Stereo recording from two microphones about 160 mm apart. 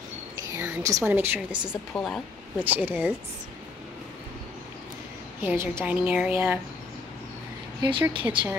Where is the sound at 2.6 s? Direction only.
10° right (ahead or behind).